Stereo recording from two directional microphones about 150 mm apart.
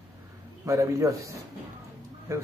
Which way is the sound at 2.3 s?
20° right (ahead or behind).